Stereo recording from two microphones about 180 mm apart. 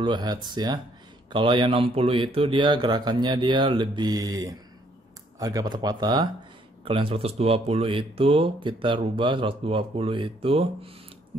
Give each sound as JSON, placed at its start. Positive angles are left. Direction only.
{"t": 0.0, "sound": "speech", "side_deg": -25}